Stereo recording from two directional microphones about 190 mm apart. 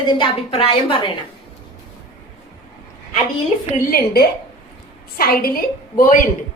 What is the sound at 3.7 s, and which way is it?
A woman's voice, 50° left (ahead or behind).